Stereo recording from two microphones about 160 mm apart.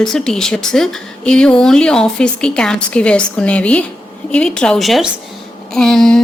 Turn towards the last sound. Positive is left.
turn(degrees=5)  # may be behind; listen again after turning